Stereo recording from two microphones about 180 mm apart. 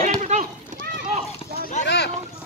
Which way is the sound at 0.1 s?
45° right (ahead or behind).